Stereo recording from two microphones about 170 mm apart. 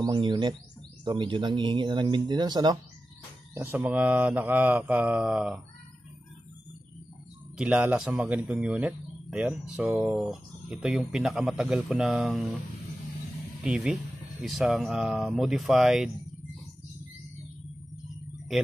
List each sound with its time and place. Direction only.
0.0 s speech: 25° right (ahead or behind)
3.5 s mantra: 10° right (ahead or behind)
7.5 s speech: 5° right (ahead or behind)
13.7 s speech: 5° right (ahead or behind)